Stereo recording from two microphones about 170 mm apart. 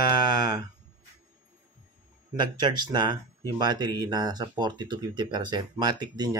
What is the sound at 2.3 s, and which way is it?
Speech, 25° right (ahead or behind).